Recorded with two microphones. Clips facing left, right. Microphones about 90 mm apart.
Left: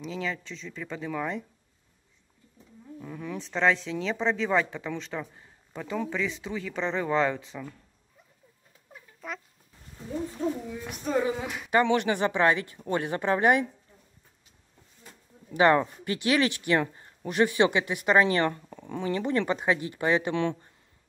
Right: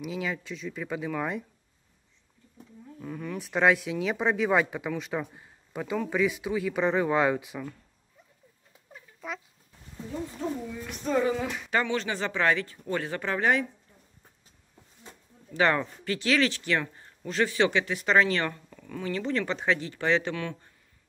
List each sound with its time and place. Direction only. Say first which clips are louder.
0.0 s speech: right 1 dB; 10° right (ahead or behind)
3.0 s speech: right 1 dB; centre (ahead or behind)
3.3 s speech: right 2 dB; 10° right (ahead or behind)
8.9 s a sound: right 1 dB; centre (ahead or behind)
11.1 s speech: right 1 dB; 15° left (ahead or behind)
15.5 s speech: left 4 dB; 20° left (ahead or behind)
18.7 s speech: left 3 dB; 30° left (ahead or behind); by 20.3 s 15° left (ahead or behind)